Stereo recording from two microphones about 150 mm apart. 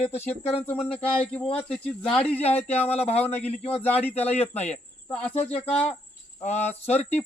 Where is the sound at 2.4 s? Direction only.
45° left (ahead or behind).